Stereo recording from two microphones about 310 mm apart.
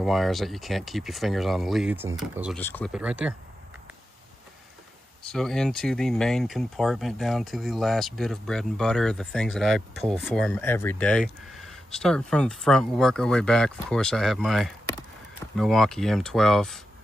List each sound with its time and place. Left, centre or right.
0.0 s speech: centre
5.2 s speech: centre